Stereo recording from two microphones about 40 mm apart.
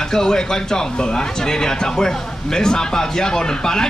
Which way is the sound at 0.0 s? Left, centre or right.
Centre.